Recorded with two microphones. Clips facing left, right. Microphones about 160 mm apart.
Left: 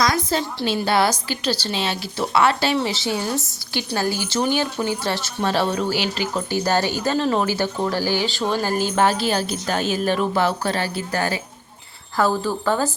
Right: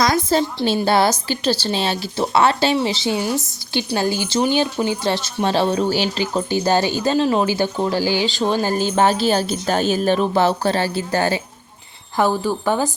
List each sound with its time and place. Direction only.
0.0 s a woman's voice: 30° right (ahead or behind)
12.1 s a woman's voice: 15° right (ahead or behind)